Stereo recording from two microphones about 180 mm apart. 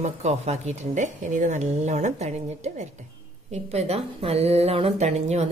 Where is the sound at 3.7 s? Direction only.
35° right (ahead or behind).